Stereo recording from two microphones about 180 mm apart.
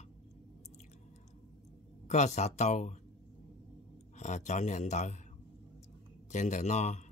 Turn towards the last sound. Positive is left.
turn(degrees=40)  # may be behind; listen again after turning